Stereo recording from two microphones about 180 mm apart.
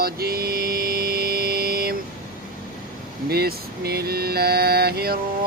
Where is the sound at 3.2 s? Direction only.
60° right (ahead or behind).